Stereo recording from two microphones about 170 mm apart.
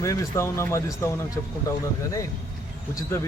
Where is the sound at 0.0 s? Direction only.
20° left (ahead or behind).